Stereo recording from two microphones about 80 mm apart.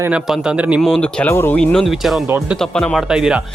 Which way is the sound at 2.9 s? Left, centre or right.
Centre.